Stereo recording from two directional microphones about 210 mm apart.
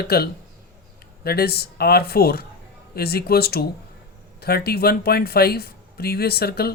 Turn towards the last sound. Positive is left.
turn(degrees=45)  # may be behind; listen again after turning